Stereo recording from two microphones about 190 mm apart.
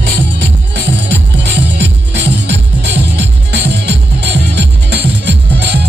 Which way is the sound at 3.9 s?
65° right (ahead or behind).